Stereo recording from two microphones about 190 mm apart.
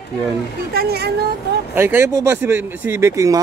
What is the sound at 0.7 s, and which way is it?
Speech, 55° right (ahead or behind).